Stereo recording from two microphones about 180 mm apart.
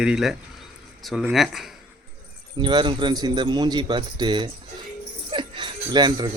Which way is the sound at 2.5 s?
25° right (ahead or behind).